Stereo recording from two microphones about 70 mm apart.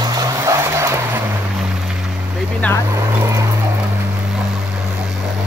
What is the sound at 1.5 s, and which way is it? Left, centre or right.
Vehicle, centre.